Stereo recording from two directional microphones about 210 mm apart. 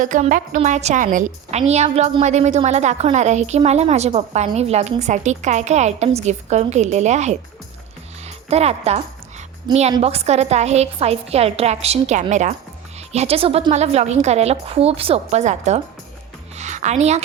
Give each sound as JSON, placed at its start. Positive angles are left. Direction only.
{"t": 0.0, "sound": "a woman's voice", "side_deg": -40}
{"t": 8.4, "sound": "a woman's voice", "side_deg": -30}
{"t": 16.6, "sound": "music", "side_deg": -35}